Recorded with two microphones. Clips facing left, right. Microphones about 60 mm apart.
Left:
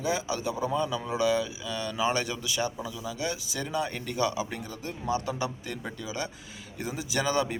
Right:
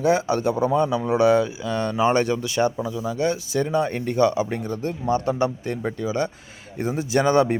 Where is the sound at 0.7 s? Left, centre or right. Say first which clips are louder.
Right 8 dB; right.